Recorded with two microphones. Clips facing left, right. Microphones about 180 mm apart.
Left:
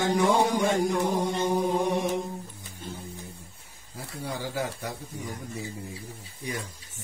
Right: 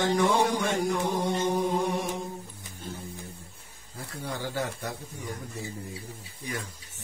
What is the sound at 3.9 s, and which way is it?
Speech, 10° left (ahead or behind).